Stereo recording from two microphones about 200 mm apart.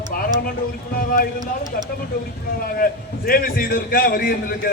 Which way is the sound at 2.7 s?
45° left (ahead or behind).